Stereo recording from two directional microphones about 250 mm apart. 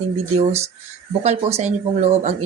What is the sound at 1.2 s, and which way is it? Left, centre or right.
A woman's voice, right.